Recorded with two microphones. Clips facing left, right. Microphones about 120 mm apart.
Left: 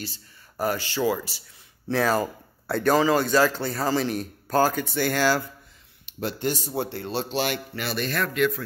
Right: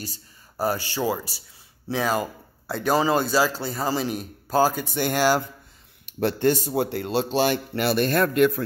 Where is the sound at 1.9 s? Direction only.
5° right (ahead or behind).